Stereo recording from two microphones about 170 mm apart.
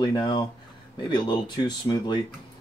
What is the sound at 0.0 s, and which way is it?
Speech, 25° left (ahead or behind).